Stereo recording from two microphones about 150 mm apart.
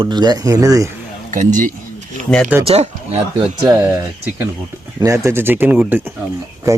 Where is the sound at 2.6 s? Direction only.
45° right (ahead or behind).